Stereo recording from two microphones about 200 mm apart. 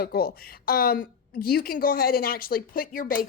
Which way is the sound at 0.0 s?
50° left (ahead or behind).